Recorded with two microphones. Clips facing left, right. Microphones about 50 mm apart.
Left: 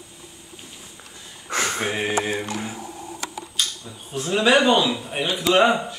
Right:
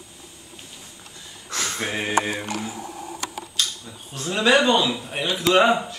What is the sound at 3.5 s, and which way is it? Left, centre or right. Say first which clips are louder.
Speech: even; centre.